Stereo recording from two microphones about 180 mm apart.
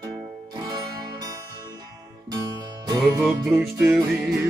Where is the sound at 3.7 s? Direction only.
10° right (ahead or behind).